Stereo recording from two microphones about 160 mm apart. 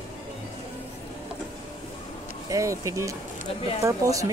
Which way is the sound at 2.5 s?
20° right (ahead or behind).